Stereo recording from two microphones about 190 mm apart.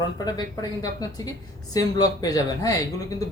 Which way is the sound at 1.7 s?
20° left (ahead or behind).